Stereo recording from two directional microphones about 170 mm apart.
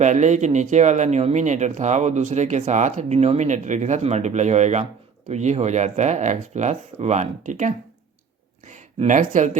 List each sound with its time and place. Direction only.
0.0 s speech: 45° right (ahead or behind)